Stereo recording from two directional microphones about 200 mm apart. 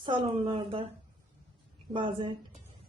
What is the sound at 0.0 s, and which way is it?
Speech, 25° right (ahead or behind).